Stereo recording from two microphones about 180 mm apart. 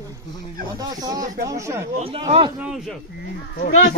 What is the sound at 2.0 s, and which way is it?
Speech, 35° right (ahead or behind).